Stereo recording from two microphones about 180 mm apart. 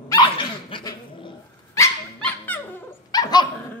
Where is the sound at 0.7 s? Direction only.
25° left (ahead or behind).